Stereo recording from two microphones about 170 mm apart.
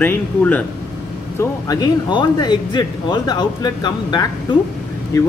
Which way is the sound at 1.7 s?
25° left (ahead or behind).